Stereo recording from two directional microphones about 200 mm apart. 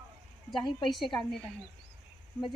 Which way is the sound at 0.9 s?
Centre (ahead or behind).